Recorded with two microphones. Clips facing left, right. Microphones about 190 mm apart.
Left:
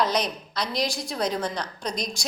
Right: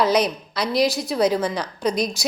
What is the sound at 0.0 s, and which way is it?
A woman's voice, 5° right (ahead or behind).